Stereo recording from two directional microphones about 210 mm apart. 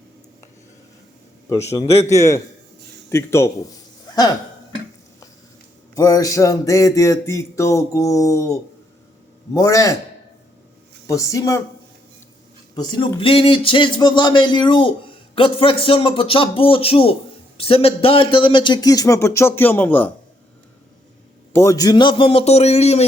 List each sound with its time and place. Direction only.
1.5 s music: 15° left (ahead or behind)
5.9 s music: 15° left (ahead or behind)
9.5 s music: 15° left (ahead or behind)
11.0 s speech: 15° left (ahead or behind)
12.7 s speech: 20° left (ahead or behind)
17.6 s music: 25° left (ahead or behind); by 20.1 s 10° left (ahead or behind)
21.5 s speech: 15° left (ahead or behind); by 23.0 s 30° left (ahead or behind)